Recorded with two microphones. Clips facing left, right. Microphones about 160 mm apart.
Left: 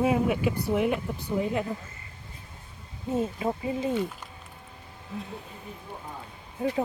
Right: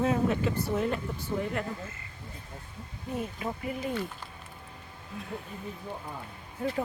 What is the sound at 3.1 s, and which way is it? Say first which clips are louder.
Speech: left 6 dB; 25° left (ahead or behind).